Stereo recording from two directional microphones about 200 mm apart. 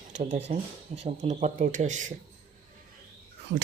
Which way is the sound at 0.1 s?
35° right (ahead or behind).